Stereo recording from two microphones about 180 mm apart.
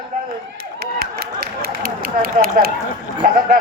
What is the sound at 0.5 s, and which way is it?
A man's voice, 55° right (ahead or behind).